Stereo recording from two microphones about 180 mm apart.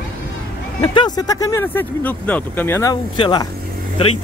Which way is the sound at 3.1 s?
25° left (ahead or behind).